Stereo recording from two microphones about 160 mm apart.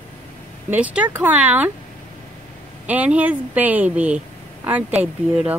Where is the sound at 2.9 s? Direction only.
10° right (ahead or behind).